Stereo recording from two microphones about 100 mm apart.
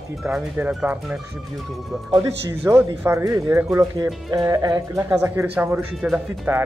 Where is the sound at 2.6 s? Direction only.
25° right (ahead or behind).